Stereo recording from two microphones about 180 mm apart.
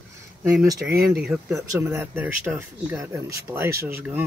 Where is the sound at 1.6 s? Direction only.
15° right (ahead or behind).